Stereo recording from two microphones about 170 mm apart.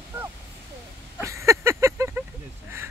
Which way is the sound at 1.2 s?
15° right (ahead or behind).